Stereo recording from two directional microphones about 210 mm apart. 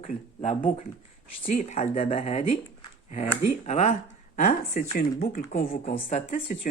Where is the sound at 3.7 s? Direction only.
30° left (ahead or behind).